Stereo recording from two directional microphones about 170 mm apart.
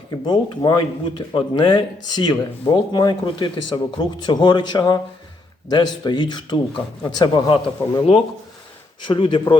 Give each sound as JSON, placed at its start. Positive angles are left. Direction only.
{"t": 0.1, "sound": "speech", "side_deg": 25}